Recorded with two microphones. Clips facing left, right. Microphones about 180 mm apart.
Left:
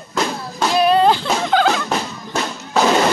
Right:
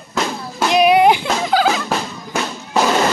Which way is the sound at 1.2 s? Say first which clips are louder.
Even; 5° right (ahead or behind).